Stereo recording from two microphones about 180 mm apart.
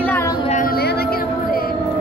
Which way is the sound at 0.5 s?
50° left (ahead or behind).